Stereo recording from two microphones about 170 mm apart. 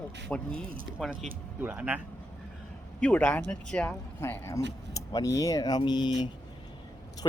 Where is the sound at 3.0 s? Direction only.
5° left (ahead or behind); by 6.1 s 25° left (ahead or behind).